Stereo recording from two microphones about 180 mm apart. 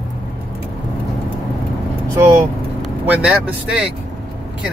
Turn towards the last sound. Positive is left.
turn(degrees=-5)  # may be behind; listen again after turning